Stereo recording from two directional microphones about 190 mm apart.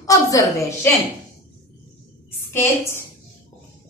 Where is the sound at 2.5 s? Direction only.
15° left (ahead or behind).